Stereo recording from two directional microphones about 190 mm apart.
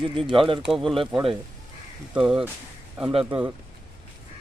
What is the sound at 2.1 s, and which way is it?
Speech, 5° right (ahead or behind).